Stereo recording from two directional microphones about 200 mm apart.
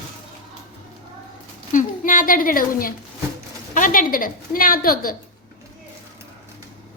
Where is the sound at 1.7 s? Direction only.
40° left (ahead or behind).